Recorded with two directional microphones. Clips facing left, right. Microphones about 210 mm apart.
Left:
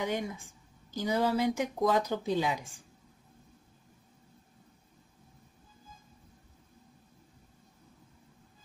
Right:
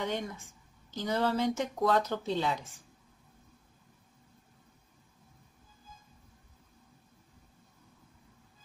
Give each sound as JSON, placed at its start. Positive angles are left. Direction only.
{"t": 0.0, "sound": "speech", "side_deg": 10}